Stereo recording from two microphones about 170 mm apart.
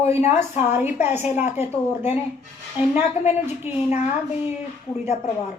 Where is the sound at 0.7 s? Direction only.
10° right (ahead or behind).